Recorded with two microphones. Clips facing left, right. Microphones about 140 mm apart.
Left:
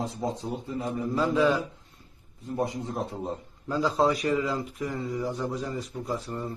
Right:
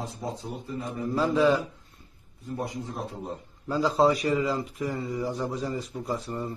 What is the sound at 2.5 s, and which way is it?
Speech, 20° left (ahead or behind).